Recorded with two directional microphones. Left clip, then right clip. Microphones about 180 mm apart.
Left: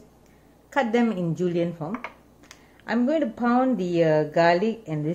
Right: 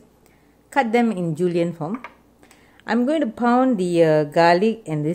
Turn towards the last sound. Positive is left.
turn(degrees=-65)  # may be behind; listen again after turning